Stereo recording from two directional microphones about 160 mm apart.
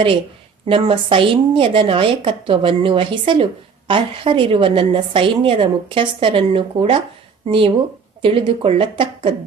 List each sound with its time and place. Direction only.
0.7 s a woman's voice: 35° right (ahead or behind)